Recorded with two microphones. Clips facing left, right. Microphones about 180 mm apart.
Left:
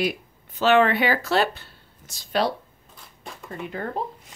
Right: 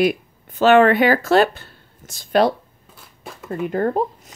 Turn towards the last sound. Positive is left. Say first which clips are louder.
# right 10 dB
turn(degrees=-50)  # may be behind; listen again after turning